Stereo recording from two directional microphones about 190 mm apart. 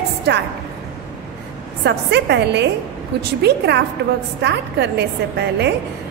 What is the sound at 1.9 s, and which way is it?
A woman's voice, 60° right (ahead or behind).